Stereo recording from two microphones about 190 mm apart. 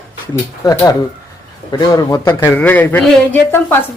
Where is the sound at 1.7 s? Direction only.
20° left (ahead or behind).